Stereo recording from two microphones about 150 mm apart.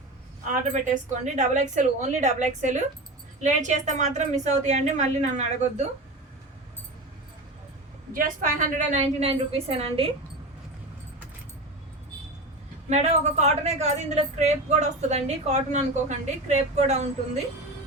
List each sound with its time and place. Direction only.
0.7 s a woman's voice: 55° right (ahead or behind)
8.1 s a woman's voice: 60° right (ahead or behind); by 10.1 s 40° right (ahead or behind)
12.9 s a woman's voice: 50° right (ahead or behind)